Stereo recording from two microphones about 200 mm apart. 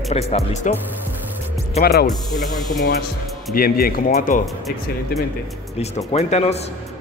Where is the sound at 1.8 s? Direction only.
50° left (ahead or behind).